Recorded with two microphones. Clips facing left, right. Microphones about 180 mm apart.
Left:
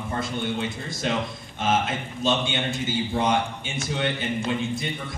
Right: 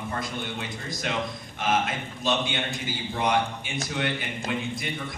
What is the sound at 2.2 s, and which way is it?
A man's voice, 25° left (ahead or behind).